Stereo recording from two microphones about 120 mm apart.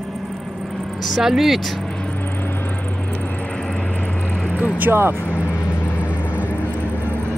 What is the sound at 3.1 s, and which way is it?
Vehicle, 15° left (ahead or behind).